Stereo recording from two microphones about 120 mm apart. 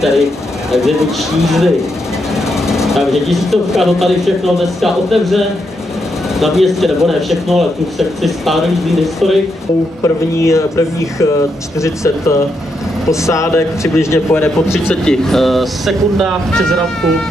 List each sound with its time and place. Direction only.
0.0 s speech: centre (ahead or behind)
10.0 s speech: 25° left (ahead or behind)
15.0 s speech: 5° left (ahead or behind)